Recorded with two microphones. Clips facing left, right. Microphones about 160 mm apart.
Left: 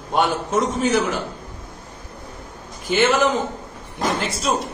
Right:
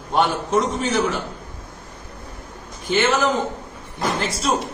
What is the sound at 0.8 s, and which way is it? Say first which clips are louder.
Speech: left 2 dB; centre (ahead or behind).